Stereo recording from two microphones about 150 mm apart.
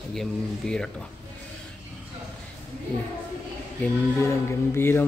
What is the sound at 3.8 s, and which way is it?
Music, 15° left (ahead or behind).